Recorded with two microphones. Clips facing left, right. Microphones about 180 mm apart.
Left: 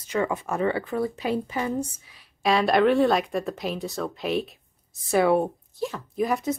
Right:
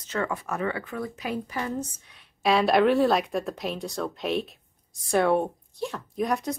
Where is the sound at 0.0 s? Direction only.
15° left (ahead or behind).